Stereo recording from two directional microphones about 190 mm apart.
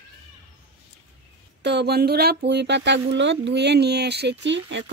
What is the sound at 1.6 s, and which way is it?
Speech, 60° right (ahead or behind).